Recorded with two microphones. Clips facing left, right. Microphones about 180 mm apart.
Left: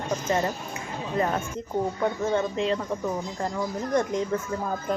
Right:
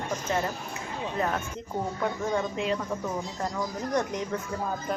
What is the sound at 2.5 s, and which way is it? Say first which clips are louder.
Speech: left 3 dB; 5° right (ahead or behind).